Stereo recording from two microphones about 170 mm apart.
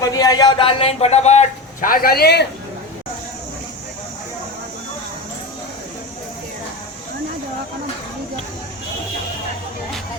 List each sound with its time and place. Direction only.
0.0 s a man's voice: 20° left (ahead or behind); by 2.5 s 75° left (ahead or behind)